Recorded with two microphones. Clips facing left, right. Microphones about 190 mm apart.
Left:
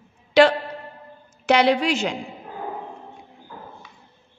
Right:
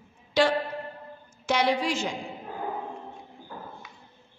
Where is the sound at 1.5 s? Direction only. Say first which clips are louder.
Left 7 dB; 70° left (ahead or behind).